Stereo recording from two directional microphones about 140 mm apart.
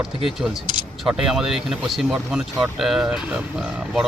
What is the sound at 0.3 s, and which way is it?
Speech, centre (ahead or behind).